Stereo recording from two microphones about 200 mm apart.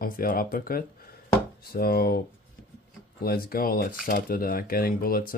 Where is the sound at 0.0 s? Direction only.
45° left (ahead or behind).